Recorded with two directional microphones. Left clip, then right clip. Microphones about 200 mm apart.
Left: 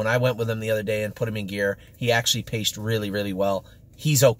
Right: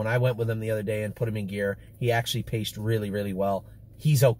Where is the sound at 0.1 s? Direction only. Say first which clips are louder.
Left 4 dB; 15° left (ahead or behind).